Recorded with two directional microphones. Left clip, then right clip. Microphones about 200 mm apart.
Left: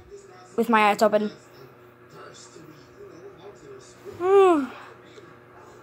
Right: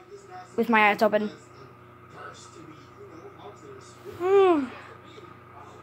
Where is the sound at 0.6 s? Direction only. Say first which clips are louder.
Left 1 dB; 15° left (ahead or behind).